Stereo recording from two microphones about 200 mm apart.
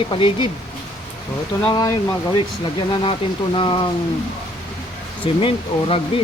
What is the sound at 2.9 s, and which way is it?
Speech, 25° left (ahead or behind).